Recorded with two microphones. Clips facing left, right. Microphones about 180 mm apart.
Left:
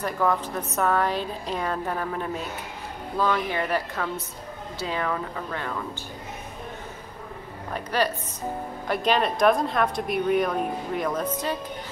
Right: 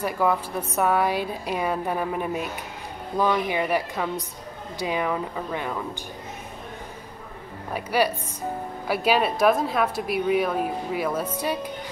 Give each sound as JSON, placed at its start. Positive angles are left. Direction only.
{"t": 0.0, "sound": "a woman's voice", "side_deg": -10}
{"t": 7.7, "sound": "a woman's voice", "side_deg": -10}